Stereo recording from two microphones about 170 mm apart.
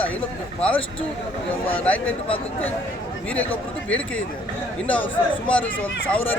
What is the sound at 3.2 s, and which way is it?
Speech, 10° left (ahead or behind).